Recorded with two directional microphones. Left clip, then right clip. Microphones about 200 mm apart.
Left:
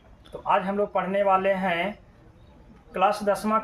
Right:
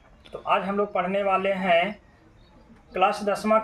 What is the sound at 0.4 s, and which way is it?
A man's voice, 20° left (ahead or behind).